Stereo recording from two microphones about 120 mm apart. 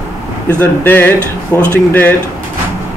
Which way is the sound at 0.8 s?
15° left (ahead or behind).